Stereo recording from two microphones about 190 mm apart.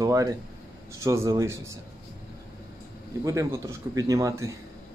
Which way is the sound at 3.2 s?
15° right (ahead or behind).